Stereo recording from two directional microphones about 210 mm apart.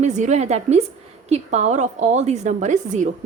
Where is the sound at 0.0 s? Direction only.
35° right (ahead or behind).